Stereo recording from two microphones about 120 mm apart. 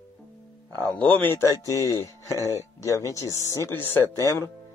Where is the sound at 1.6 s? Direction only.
25° left (ahead or behind).